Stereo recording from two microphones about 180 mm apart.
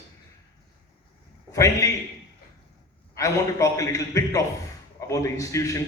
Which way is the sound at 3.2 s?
20° left (ahead or behind).